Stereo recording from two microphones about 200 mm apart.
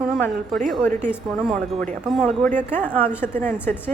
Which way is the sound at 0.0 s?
Centre (ahead or behind).